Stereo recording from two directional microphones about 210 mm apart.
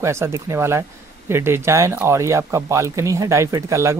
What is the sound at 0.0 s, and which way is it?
Speech, 15° right (ahead or behind).